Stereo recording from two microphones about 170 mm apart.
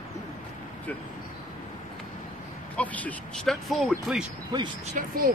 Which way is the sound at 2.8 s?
10° left (ahead or behind).